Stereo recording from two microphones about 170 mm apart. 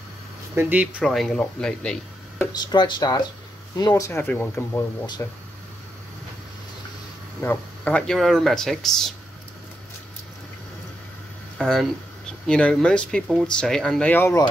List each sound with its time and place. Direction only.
0.6 s speech: 10° right (ahead or behind); by 2.5 s 10° left (ahead or behind)
2.5 s speech: 25° left (ahead or behind)
5.0 s speech: 25° left (ahead or behind)
7.3 s speech: 10° left (ahead or behind)
11.5 s speech: centre (ahead or behind)